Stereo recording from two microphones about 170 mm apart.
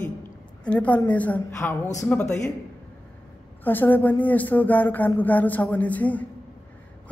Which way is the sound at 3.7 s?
10° left (ahead or behind).